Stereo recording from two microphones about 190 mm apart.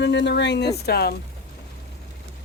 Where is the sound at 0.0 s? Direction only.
70° left (ahead or behind).